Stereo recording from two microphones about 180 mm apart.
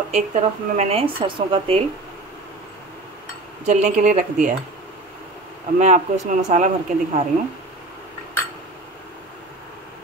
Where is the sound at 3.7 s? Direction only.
40° right (ahead or behind).